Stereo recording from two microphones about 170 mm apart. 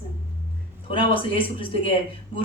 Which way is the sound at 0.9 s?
30° left (ahead or behind).